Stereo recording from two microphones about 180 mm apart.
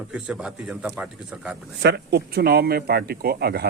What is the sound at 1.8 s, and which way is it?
Speech, 65° right (ahead or behind).